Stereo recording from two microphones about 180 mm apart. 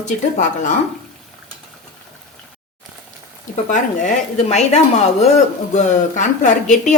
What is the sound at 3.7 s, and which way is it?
Speech, 45° left (ahead or behind).